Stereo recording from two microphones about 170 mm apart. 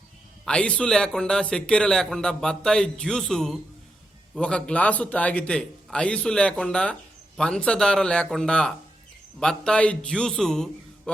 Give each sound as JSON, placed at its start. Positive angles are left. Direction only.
{"t": 0.4, "sound": "a man's voice", "side_deg": 5}